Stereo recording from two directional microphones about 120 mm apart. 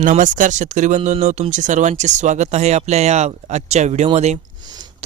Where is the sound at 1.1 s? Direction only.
75° right (ahead or behind).